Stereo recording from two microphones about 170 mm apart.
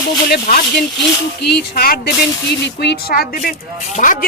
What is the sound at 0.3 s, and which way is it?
Speech, 60° left (ahead or behind).